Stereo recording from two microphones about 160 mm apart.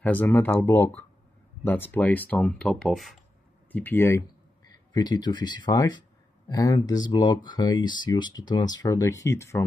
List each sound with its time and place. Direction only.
0.0 s speech: 10° left (ahead or behind)
3.7 s speech: 10° left (ahead or behind)
4.9 s speech: 25° left (ahead or behind)